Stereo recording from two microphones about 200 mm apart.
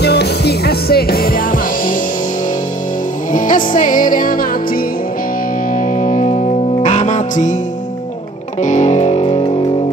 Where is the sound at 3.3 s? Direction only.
40° left (ahead or behind).